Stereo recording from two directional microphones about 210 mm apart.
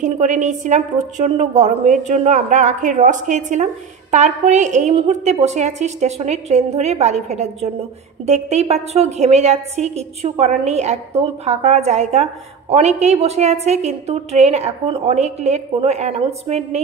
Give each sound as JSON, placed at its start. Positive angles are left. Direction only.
{"t": 0.0, "sound": "a woman's voice", "side_deg": -35}